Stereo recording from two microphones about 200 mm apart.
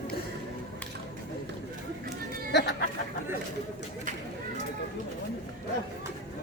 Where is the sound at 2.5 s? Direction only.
60° left (ahead or behind).